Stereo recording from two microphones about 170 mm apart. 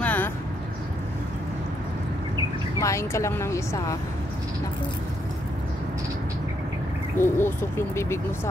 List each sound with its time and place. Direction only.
0.0 s vehicle: 10° left (ahead or behind)
2.8 s speech: 15° left (ahead or behind)
7.2 s speech: 15° left (ahead or behind)